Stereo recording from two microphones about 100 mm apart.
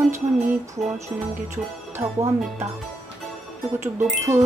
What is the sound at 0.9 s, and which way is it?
Speech, 30° right (ahead or behind).